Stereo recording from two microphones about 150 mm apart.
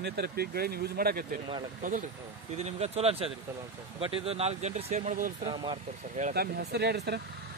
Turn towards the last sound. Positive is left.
turn(degrees=-90)